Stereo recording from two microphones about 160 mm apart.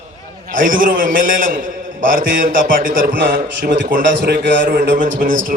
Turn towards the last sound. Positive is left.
turn(degrees=-55)  # may be behind; listen again after turning